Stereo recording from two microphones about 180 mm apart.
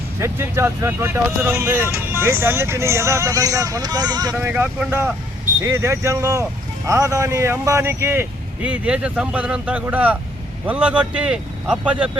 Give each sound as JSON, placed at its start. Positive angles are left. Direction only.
{"t": 0.2, "sound": "speech", "side_deg": -15}
{"t": 4.4, "sound": "speech", "side_deg": -10}